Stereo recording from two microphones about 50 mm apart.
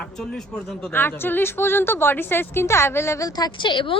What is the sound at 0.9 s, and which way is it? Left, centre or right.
Speech, left.